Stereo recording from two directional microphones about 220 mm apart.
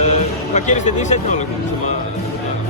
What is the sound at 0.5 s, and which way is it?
Speech, 30° left (ahead or behind).